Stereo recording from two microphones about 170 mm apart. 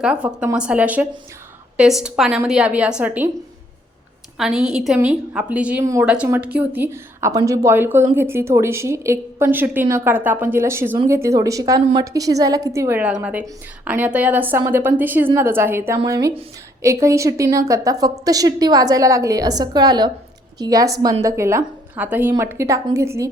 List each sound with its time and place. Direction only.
0.0 s a woman's voice: 5° right (ahead or behind)
4.4 s a woman's voice: 5° right (ahead or behind)